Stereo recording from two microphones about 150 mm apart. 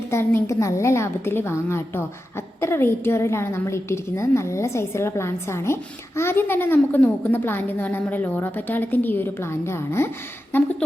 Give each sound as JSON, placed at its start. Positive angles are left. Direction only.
{"t": 0.1, "sound": "a woman's voice", "side_deg": 15}